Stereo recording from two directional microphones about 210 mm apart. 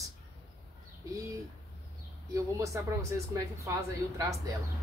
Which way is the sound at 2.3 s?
15° right (ahead or behind).